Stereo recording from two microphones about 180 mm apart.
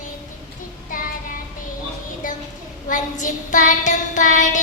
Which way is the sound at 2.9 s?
45° left (ahead or behind).